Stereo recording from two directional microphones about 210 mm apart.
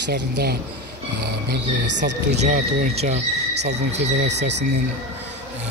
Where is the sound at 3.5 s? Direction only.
55° right (ahead or behind).